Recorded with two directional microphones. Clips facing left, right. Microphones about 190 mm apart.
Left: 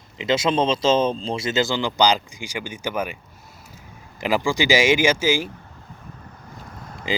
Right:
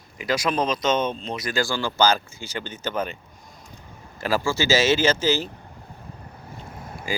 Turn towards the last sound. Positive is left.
turn(degrees=20)  # may be behind; listen again after turning